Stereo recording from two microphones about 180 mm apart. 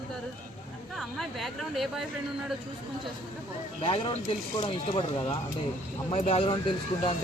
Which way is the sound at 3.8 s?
30° left (ahead or behind).